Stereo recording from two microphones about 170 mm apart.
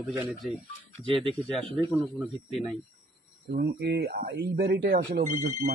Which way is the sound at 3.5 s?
70° right (ahead or behind).